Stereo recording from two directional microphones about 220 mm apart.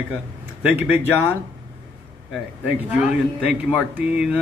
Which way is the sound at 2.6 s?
5° right (ahead or behind).